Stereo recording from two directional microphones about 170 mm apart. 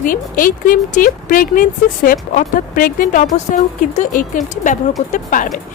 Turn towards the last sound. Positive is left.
turn(degrees=50)  # may be behind; listen again after turning